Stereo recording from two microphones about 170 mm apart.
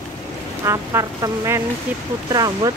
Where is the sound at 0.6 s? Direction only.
20° right (ahead or behind).